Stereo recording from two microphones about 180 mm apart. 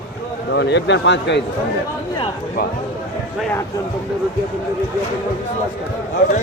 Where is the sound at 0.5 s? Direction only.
70° left (ahead or behind).